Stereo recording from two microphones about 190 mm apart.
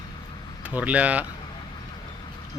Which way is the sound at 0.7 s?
5° right (ahead or behind).